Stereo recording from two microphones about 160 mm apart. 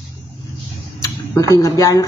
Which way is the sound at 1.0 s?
20° left (ahead or behind).